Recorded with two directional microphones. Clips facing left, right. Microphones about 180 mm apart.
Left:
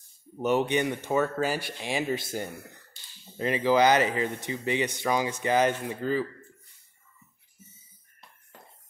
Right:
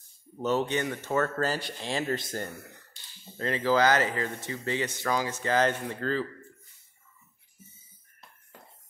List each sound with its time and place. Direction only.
0.4 s speech: 15° left (ahead or behind)